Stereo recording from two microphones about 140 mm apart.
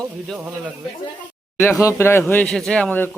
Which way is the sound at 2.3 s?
10° left (ahead or behind).